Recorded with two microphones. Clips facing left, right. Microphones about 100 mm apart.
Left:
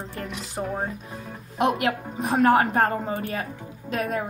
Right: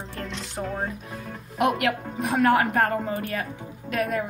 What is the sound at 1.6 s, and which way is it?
A woman's voice, 25° left (ahead or behind).